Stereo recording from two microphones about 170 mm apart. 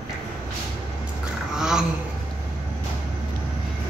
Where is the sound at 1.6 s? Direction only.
5° right (ahead or behind).